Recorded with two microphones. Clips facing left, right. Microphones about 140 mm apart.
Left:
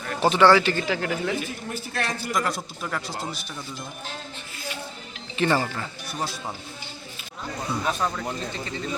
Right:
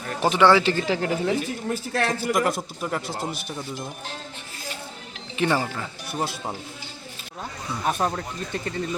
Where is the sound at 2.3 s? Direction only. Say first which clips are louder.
Right 3 dB; 55° right (ahead or behind).